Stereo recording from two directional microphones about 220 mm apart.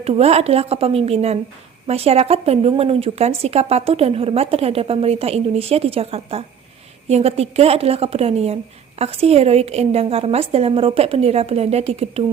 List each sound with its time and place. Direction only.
0.0 s speech: 25° right (ahead or behind)